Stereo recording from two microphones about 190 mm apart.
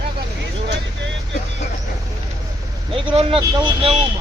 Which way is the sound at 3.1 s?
25° right (ahead or behind).